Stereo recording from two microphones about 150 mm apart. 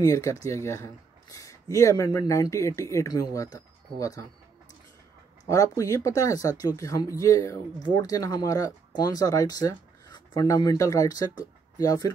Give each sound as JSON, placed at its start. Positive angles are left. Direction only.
{"t": 0.0, "sound": "speech", "side_deg": 20}
{"t": 5.4, "sound": "speech", "side_deg": 20}